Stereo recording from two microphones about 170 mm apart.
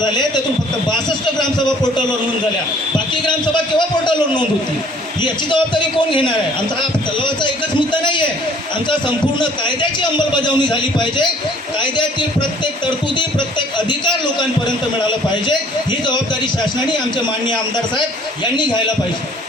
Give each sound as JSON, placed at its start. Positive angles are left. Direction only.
{"t": 0.0, "sound": "a man's voice", "side_deg": 25}
{"t": 1.4, "sound": "a man's voice", "side_deg": 25}
{"t": 3.8, "sound": "a man's voice", "side_deg": 25}
{"t": 8.9, "sound": "a man's voice", "side_deg": 30}
{"t": 15.4, "sound": "a man's voice", "side_deg": 25}